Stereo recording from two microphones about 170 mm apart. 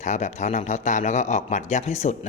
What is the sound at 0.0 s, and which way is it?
Speech, 45° left (ahead or behind).